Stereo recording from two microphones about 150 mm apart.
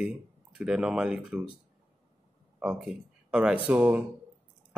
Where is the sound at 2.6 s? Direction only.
5° right (ahead or behind).